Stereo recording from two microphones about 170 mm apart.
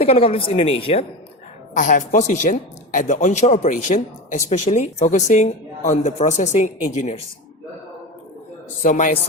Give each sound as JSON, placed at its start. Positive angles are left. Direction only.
{"t": 0.0, "sound": "speech", "side_deg": 35}
{"t": 1.7, "sound": "speech", "side_deg": 50}
{"t": 8.8, "sound": "speech", "side_deg": 50}